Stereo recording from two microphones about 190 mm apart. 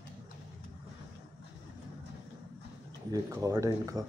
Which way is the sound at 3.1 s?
15° right (ahead or behind).